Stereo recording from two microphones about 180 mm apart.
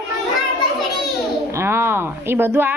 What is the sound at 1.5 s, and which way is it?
A woman's voice, 15° right (ahead or behind).